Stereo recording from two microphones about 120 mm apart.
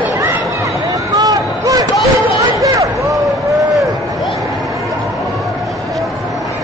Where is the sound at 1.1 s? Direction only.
30° right (ahead or behind).